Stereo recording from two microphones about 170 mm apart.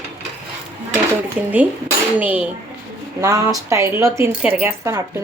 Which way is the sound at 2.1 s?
10° right (ahead or behind).